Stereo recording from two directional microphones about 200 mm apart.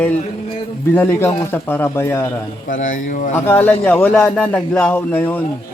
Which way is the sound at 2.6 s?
40° left (ahead or behind).